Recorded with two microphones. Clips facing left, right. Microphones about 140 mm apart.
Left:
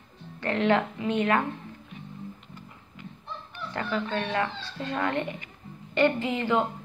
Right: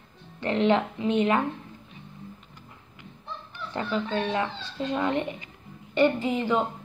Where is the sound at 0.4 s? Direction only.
20° right (ahead or behind).